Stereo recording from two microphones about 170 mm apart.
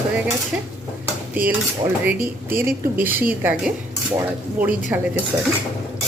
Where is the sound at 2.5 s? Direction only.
10° right (ahead or behind).